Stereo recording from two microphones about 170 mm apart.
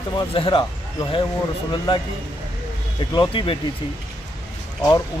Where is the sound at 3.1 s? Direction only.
30° left (ahead or behind).